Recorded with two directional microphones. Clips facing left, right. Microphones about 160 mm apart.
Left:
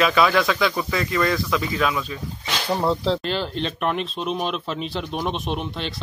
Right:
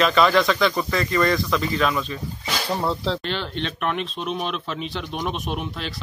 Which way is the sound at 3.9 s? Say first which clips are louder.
Left 1 dB; centre (ahead or behind).